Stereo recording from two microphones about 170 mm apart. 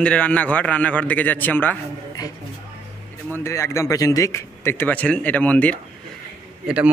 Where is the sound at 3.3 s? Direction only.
15° left (ahead or behind).